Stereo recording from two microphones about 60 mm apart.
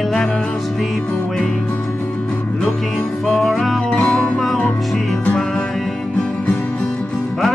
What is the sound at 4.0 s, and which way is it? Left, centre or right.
Music, centre.